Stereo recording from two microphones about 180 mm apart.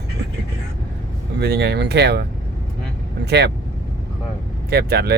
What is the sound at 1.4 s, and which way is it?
Speech, 65° right (ahead or behind).